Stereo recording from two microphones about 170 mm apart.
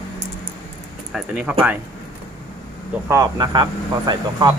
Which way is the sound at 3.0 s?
20° right (ahead or behind).